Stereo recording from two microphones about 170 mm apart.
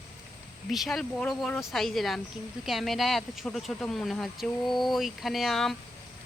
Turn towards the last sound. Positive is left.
turn(degrees=0)  # may be behind; listen again after turning